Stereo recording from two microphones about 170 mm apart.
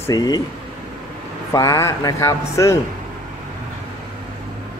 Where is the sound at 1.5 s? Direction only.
20° left (ahead or behind).